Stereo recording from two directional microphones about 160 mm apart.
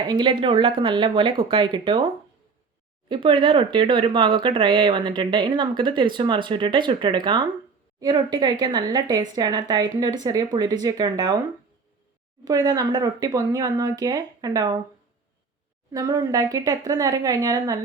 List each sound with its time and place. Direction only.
0.1 s speech: 30° right (ahead or behind)
3.1 s a woman's voice: 30° right (ahead or behind)
12.5 s a woman's voice: 25° right (ahead or behind)
15.9 s a woman's voice: 25° right (ahead or behind)